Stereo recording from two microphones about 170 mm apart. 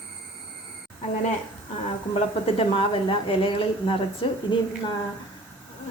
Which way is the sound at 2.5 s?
30° left (ahead or behind).